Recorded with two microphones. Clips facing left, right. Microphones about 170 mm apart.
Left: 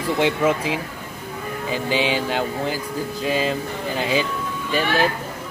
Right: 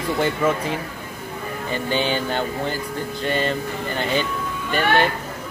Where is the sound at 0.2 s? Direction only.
5° left (ahead or behind).